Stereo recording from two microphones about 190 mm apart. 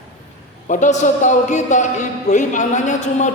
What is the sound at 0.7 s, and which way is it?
A man's voice, 40° left (ahead or behind).